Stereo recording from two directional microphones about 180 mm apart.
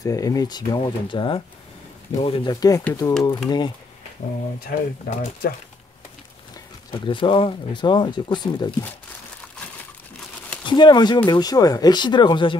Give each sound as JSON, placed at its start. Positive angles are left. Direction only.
{"t": 0.0, "sound": "speech", "side_deg": 20}
{"t": 4.6, "sound": "speech", "side_deg": 50}
{"t": 6.9, "sound": "speech", "side_deg": 30}
{"t": 10.6, "sound": "speech", "side_deg": 25}